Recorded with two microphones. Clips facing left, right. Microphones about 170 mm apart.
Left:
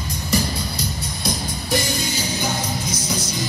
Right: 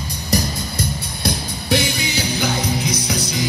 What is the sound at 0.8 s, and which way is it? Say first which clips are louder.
Music: right 3 dB; 65° right (ahead or behind).